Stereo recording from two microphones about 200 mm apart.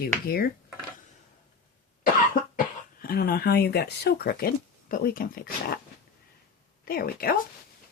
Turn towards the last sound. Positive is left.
turn(degrees=50)  # may be behind; listen again after turning